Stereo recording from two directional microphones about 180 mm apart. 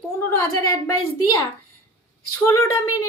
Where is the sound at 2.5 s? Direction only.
15° left (ahead or behind).